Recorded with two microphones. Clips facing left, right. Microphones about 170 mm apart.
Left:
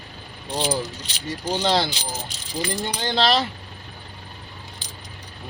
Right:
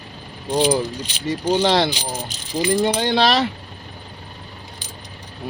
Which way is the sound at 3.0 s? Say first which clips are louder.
Right 3 dB; 75° right (ahead or behind).